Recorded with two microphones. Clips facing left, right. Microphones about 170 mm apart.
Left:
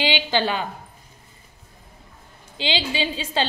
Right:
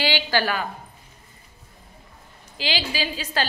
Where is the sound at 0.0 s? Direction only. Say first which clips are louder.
Left 1 dB; 20° left (ahead or behind).